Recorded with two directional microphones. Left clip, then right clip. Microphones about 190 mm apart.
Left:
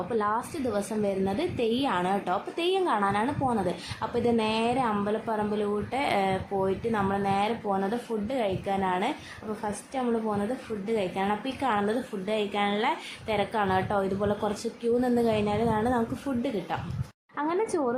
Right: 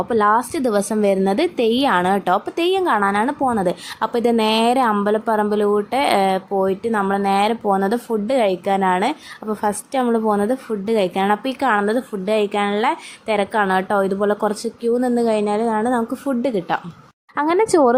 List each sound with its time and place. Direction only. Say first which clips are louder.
0.1 s a woman's voice: right 12 dB; 50° right (ahead or behind); by 16.8 s 35° right (ahead or behind)
17.3 s speech: right 12 dB; 50° right (ahead or behind)